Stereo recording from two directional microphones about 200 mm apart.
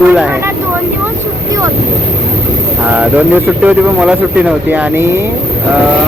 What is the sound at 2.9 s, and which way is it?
Speech, 10° right (ahead or behind).